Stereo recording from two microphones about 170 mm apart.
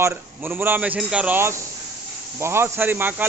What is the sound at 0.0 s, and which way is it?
Speech, 10° right (ahead or behind).